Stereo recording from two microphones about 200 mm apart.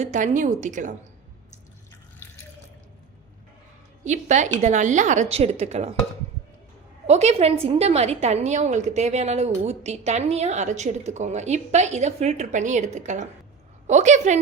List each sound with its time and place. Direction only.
0.0 s a woman's voice: 40° right (ahead or behind)
4.0 s a woman's voice: 35° right (ahead or behind)
7.1 s a woman's voice: 30° right (ahead or behind)